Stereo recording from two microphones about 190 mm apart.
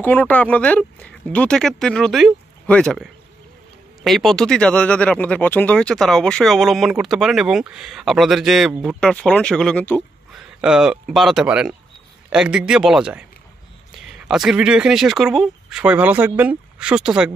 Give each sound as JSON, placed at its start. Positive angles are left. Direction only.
{"t": 0.0, "sound": "speech", "side_deg": 10}
{"t": 10.6, "sound": "speech", "side_deg": -5}